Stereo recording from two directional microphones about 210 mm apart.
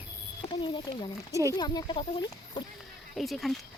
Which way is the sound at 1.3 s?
15° right (ahead or behind).